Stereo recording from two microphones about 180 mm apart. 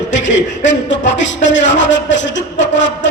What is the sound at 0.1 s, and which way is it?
A man's voice, 90° left.